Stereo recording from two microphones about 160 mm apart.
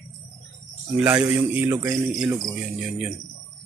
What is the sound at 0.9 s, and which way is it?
A man's voice, 10° right (ahead or behind).